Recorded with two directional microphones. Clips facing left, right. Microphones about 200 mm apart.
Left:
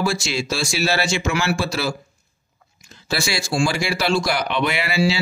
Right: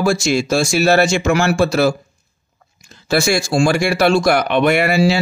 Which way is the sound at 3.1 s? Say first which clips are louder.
Right 8 dB; 50° right (ahead or behind).